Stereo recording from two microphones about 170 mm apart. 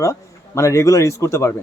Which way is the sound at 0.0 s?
15° left (ahead or behind).